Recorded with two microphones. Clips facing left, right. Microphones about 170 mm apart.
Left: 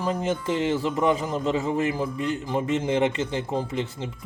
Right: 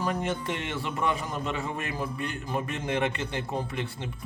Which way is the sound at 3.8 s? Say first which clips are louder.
Left 3 dB; 90° left.